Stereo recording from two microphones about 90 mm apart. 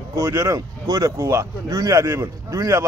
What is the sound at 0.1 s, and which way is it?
Speech, 30° right (ahead or behind).